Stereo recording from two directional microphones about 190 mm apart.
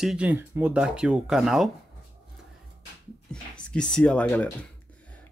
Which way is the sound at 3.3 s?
5° left (ahead or behind).